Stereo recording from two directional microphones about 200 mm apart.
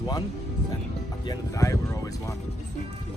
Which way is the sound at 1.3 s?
15° left (ahead or behind).